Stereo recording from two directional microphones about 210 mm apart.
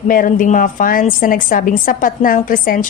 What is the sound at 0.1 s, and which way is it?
A woman's voice, 40° left (ahead or behind).